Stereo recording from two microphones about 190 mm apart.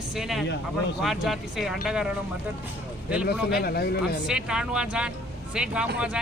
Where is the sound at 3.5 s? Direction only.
55° left (ahead or behind).